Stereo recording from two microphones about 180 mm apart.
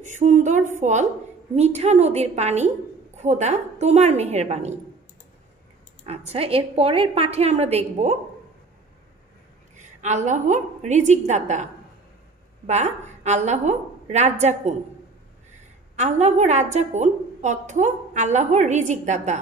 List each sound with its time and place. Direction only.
0.0 s a woman's voice: 40° right (ahead or behind)
6.0 s a woman's voice: 35° right (ahead or behind)
9.8 s a woman's voice: 40° right (ahead or behind)
12.6 s a woman's voice: 40° right (ahead or behind)
16.0 s a woman's voice: 40° right (ahead or behind)